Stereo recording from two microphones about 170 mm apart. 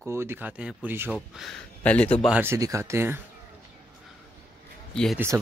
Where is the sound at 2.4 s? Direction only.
15° right (ahead or behind).